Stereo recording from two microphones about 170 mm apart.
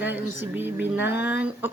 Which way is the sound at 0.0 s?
10° right (ahead or behind).